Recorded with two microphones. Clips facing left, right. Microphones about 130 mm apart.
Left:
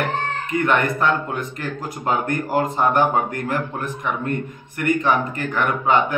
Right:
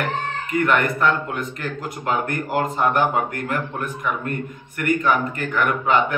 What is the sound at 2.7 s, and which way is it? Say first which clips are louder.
Speech: left 1 dB; 30° left (ahead or behind).